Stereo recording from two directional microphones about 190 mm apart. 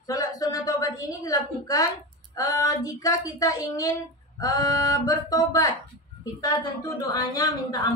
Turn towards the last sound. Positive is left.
turn(degrees=20)  # may be behind; listen again after turning